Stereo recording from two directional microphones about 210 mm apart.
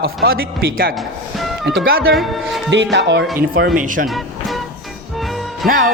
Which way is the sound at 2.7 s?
55° right (ahead or behind).